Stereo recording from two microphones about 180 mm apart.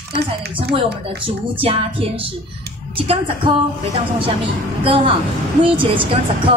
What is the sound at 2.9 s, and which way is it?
Speech, 30° right (ahead or behind).